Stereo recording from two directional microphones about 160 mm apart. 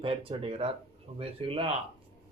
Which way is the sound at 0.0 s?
35° right (ahead or behind).